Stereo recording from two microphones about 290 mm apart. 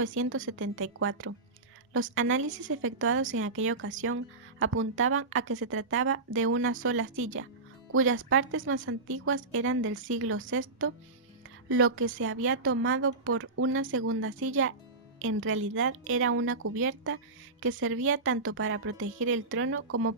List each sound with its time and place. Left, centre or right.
0.0 s a woman's voice: right